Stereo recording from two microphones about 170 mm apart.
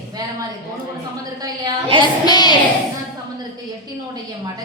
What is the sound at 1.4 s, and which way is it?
Speech, 25° right (ahead or behind).